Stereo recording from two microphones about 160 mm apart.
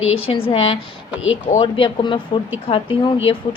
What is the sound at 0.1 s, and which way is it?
A woman's voice, 35° left (ahead or behind).